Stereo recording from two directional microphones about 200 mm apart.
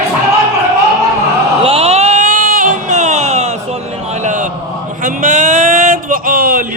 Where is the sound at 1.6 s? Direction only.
30° right (ahead or behind).